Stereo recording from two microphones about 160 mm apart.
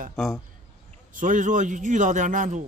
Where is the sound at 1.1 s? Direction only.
55° right (ahead or behind).